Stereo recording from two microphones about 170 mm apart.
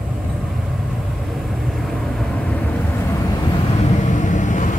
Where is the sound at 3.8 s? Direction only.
45° left (ahead or behind).